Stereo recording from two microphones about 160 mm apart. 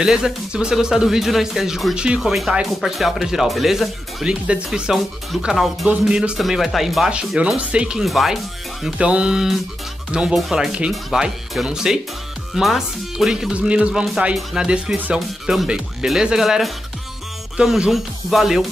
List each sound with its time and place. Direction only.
0.0 s speech: 5° right (ahead or behind)